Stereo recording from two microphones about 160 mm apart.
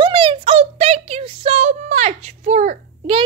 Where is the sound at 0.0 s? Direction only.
30° right (ahead or behind); by 3.1 s 50° right (ahead or behind).